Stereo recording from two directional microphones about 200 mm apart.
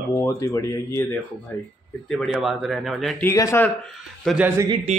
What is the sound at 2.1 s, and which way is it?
Speech, centre (ahead or behind).